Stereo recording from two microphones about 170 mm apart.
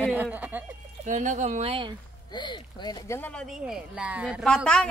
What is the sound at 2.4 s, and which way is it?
Speech, 25° left (ahead or behind).